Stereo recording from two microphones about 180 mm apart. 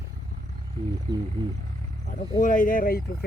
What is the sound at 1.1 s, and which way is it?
Speech, 25° right (ahead or behind).